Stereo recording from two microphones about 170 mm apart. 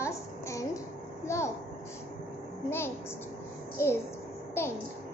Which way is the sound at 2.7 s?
15° left (ahead or behind).